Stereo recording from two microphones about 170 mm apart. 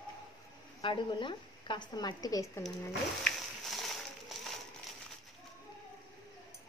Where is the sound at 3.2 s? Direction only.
Centre (ahead or behind).